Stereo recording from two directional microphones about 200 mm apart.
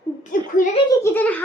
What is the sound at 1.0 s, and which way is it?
Speech, 10° left (ahead or behind).